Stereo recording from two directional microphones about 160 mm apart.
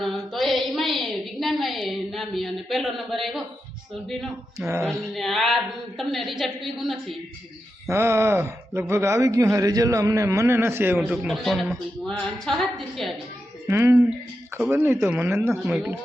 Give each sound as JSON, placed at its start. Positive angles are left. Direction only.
{"t": 0.0, "sound": "a sound", "side_deg": 0}
{"t": 4.5, "sound": "speech", "side_deg": -15}
{"t": 4.9, "sound": "a woman's voice", "side_deg": 0}
{"t": 7.9, "sound": "speech", "side_deg": -15}
{"t": 13.7, "sound": "a woman's voice", "side_deg": -15}